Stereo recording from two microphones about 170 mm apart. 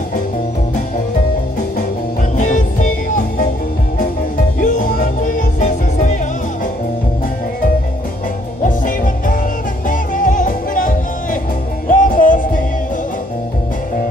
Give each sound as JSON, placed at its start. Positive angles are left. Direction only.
{"t": 2.3, "sound": "music", "side_deg": 50}
{"t": 4.6, "sound": "music", "side_deg": 50}
{"t": 8.6, "sound": "music", "side_deg": 50}